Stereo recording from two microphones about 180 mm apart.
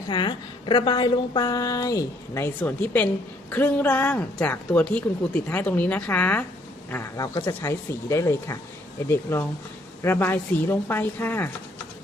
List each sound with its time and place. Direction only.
0.1 s a woman's voice: 25° left (ahead or behind)